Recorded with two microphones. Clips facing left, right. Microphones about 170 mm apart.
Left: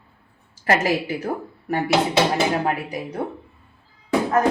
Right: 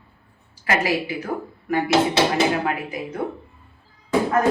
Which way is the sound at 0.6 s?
45° left (ahead or behind).